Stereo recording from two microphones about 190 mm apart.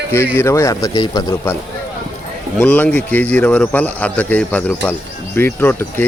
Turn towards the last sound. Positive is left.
turn(degrees=10)  # may be behind; listen again after turning